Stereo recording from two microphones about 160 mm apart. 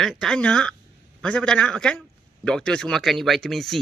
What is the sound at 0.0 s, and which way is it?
A man's voice, centre (ahead or behind).